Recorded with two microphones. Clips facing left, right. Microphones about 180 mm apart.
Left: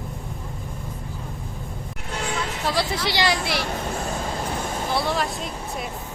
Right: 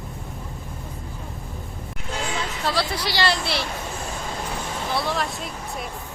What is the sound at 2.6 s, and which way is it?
Vehicle, 15° left (ahead or behind).